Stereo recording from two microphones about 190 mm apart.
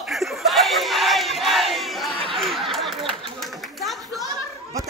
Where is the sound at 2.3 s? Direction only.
Centre (ahead or behind).